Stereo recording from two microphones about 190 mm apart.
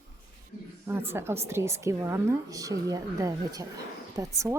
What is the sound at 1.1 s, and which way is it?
A woman's voice, 15° right (ahead or behind).